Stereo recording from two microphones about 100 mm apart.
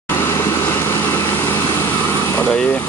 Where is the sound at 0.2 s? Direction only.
25° left (ahead or behind).